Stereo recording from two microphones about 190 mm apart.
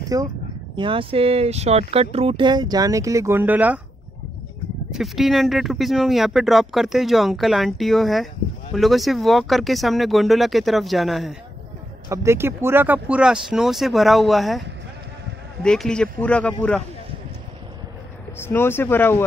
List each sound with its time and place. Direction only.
0.1 s speech: 20° right (ahead or behind)
4.9 s speech: centre (ahead or behind)
12.1 s speech: 15° right (ahead or behind)
15.6 s speech: 5° left (ahead or behind)
18.4 s speech: 10° left (ahead or behind)